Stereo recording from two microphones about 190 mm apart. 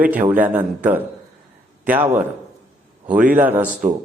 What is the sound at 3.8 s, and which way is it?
Speech, 45° right (ahead or behind).